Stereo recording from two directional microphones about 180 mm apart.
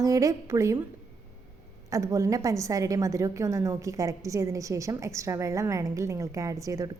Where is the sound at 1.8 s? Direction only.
15° right (ahead or behind).